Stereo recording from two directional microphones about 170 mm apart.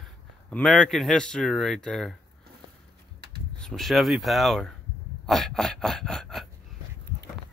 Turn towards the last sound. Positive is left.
turn(degrees=0)  # may be behind; listen again after turning